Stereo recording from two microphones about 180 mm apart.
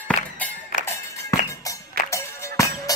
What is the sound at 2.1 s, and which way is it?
Music, 15° left (ahead or behind).